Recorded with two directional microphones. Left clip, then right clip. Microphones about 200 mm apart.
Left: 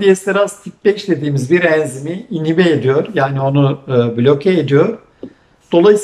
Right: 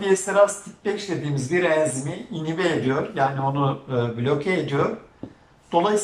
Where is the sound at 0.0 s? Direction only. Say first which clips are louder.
Left 6 dB; 50° left (ahead or behind).